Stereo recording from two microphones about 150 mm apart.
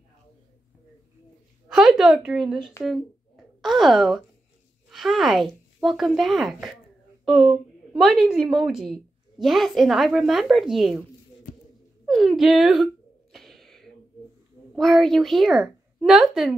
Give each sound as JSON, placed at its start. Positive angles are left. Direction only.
{"t": 1.7, "sound": "a woman's voice", "side_deg": -5}
{"t": 12.1, "sound": "a sound", "side_deg": 0}
{"t": 14.8, "sound": "a woman's voice", "side_deg": 0}